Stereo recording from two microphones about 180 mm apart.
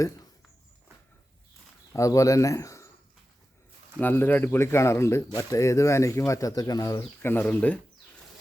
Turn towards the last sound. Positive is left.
turn(degrees=10)  # may be behind; listen again after turning